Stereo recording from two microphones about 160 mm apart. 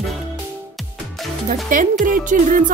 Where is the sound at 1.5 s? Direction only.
55° right (ahead or behind).